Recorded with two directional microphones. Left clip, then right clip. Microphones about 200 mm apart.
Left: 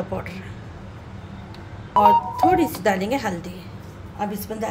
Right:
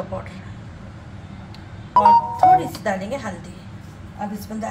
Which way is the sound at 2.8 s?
55° left (ahead or behind).